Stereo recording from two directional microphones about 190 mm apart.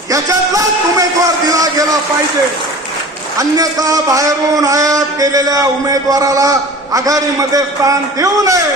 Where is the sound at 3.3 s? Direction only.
20° right (ahead or behind).